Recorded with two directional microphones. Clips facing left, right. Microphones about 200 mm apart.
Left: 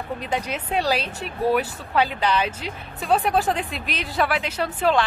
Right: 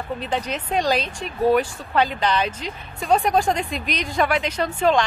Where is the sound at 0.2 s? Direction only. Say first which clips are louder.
Right 1 dB; 10° left (ahead or behind).